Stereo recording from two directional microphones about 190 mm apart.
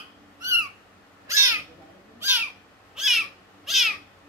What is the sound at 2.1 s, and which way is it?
Cat, 10° right (ahead or behind).